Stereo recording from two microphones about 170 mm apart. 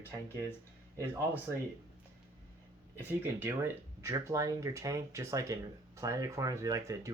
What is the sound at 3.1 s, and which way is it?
Speech, 10° right (ahead or behind).